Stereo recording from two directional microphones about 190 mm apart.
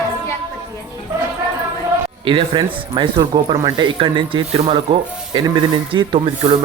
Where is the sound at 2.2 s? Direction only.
25° right (ahead or behind).